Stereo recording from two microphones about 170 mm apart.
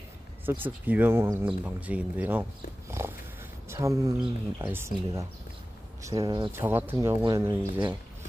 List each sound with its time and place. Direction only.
0.5 s speech: 10° right (ahead or behind)
2.9 s dog: 15° right (ahead or behind)
3.6 s speech: 15° right (ahead or behind)
6.0 s speech: 25° right (ahead or behind)
6.5 s speech: 10° right (ahead or behind)